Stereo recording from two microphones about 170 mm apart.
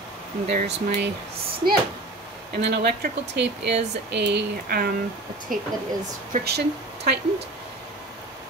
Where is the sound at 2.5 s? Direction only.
75° right (ahead or behind).